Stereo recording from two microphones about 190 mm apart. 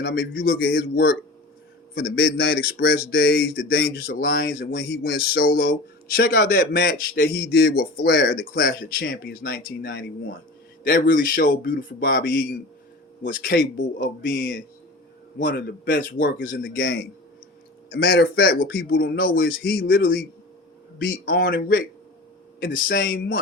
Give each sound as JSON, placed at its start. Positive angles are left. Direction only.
{"t": 0.0, "sound": "speech", "side_deg": 55}
{"t": 22.9, "sound": "speech", "side_deg": 50}